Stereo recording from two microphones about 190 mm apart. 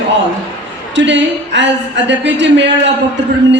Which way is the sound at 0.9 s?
70° right (ahead or behind).